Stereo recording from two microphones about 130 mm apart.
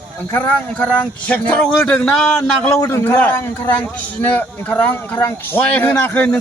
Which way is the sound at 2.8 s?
20° left (ahead or behind).